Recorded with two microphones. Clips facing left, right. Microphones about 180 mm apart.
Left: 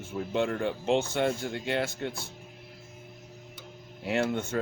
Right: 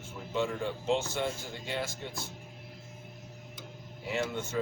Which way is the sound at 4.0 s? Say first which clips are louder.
Left 5 dB; 65° left (ahead or behind).